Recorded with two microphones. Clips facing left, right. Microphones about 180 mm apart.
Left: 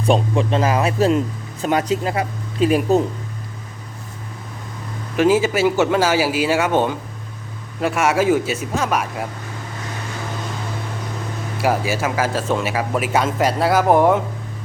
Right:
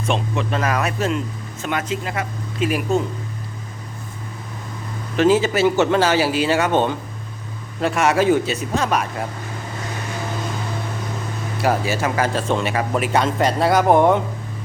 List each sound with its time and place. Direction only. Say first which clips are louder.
0.0 s speech: left 5 dB; 30° left (ahead or behind)
5.1 s a man's voice: even; 10° left (ahead or behind)
11.5 s speech: even; 10° left (ahead or behind)